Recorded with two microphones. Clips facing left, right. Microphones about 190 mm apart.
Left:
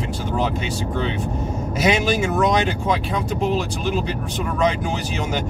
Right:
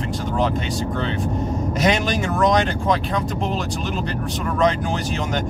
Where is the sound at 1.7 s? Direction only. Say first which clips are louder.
Left 2 dB; 5° left (ahead or behind).